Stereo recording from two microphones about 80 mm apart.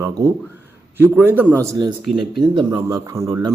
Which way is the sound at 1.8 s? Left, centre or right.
Right.